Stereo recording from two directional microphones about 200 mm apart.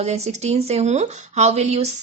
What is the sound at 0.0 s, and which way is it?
Speech, 30° right (ahead or behind).